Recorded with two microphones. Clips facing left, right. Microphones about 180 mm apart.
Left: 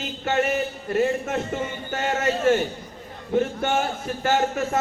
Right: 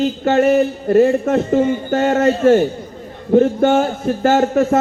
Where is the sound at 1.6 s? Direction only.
50° right (ahead or behind).